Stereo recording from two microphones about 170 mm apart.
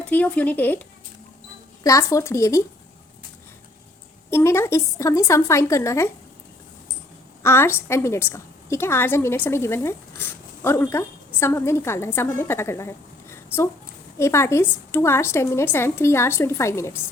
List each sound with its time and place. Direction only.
0.0 s a woman's voice: 10° left (ahead or behind)
4.3 s a woman's voice: 15° left (ahead or behind)
7.4 s a woman's voice: 15° left (ahead or behind)